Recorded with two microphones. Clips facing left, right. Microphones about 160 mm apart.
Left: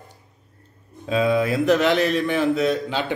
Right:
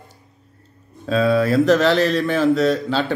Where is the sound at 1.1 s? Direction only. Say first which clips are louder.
Right 3 dB; 15° left (ahead or behind).